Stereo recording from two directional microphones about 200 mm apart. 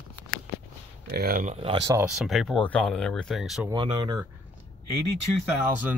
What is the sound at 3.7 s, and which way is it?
Speech, 20° right (ahead or behind).